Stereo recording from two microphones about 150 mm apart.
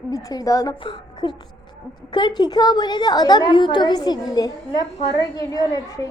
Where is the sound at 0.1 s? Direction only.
25° left (ahead or behind).